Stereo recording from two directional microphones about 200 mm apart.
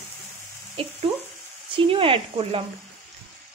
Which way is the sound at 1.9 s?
25° right (ahead or behind).